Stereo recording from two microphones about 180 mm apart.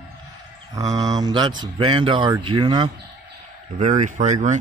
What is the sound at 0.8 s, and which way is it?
Speech, 20° right (ahead or behind).